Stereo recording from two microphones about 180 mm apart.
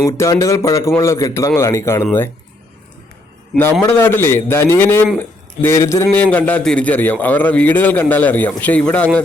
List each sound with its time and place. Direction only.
0.0 s a man's voice: 15° left (ahead or behind)
3.6 s a man's voice: 10° left (ahead or behind)